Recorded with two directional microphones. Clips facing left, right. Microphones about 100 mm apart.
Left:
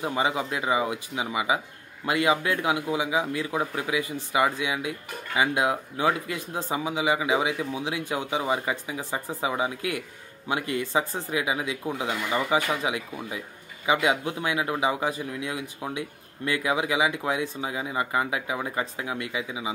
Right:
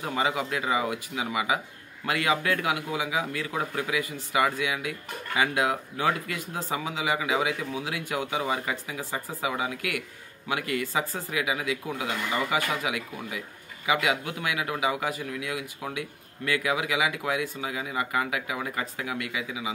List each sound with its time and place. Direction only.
0.0 s speech: 20° left (ahead or behind)